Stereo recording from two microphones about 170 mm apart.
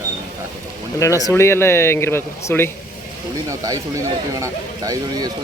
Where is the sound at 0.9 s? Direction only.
20° left (ahead or behind).